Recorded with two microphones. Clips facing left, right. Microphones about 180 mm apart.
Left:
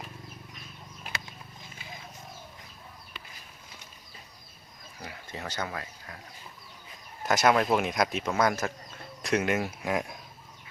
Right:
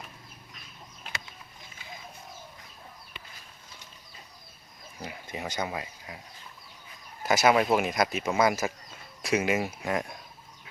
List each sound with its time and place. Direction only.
5.0 s speech: 15° right (ahead or behind)
7.3 s speech: 5° right (ahead or behind)